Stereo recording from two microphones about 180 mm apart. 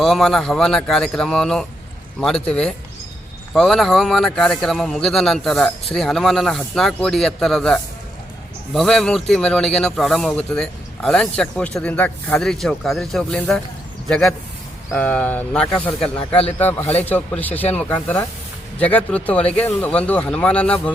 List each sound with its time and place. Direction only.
0.0 s speech: centre (ahead or behind)
18.8 s speech: 10° left (ahead or behind)